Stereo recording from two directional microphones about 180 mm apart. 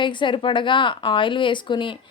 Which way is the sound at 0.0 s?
25° left (ahead or behind).